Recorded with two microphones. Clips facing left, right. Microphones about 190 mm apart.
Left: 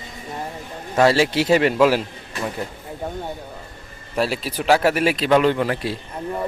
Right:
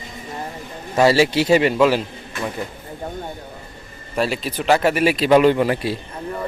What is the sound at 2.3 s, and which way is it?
Speech, 35° left (ahead or behind).